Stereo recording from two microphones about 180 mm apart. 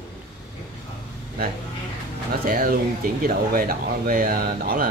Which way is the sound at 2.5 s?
50° right (ahead or behind).